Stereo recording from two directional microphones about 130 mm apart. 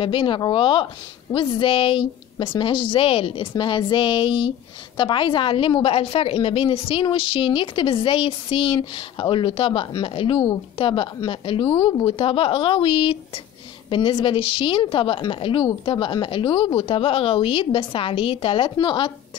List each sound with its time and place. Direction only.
0.0 s a woman's voice: 40° left (ahead or behind)